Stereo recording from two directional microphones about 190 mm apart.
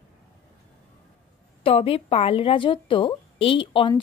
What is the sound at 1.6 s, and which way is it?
A woman's voice, 30° left (ahead or behind).